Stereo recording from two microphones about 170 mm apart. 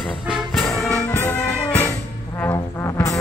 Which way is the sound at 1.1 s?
15° left (ahead or behind).